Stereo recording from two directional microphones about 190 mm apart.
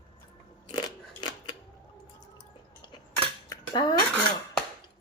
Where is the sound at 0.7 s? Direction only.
25° left (ahead or behind).